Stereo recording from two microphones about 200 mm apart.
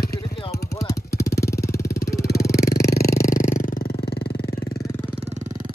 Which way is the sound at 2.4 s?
15° left (ahead or behind).